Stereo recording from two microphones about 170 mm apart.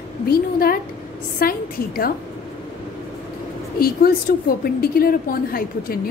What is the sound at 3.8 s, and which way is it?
A woman's voice, 60° left (ahead or behind).